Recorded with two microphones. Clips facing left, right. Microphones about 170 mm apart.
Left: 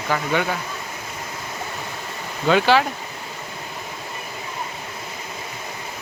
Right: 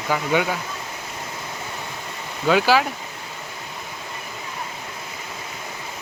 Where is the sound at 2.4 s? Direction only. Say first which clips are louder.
Left 1 dB; 5° right (ahead or behind).